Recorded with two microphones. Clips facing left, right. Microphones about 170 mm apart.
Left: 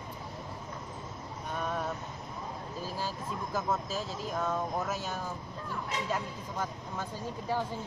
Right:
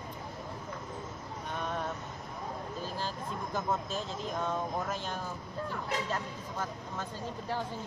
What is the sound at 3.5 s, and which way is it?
Speech, 5° left (ahead or behind).